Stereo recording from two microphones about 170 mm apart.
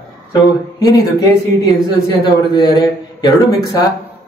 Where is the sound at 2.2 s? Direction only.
25° left (ahead or behind).